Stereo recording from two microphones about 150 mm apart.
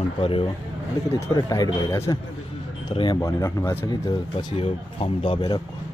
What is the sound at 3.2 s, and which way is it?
Speech, 20° left (ahead or behind).